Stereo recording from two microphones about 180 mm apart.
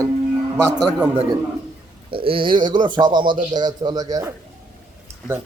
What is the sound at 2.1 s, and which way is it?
Speech, 30° right (ahead or behind).